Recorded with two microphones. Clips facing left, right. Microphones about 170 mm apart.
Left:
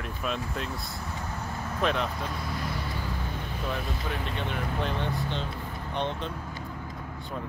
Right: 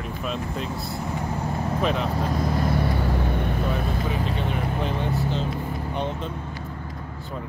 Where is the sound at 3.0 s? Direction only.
65° right (ahead or behind).